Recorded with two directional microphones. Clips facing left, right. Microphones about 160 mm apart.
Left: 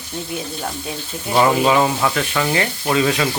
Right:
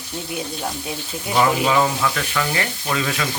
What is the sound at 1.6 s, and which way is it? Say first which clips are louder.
Speech: left 3 dB; 25° left (ahead or behind).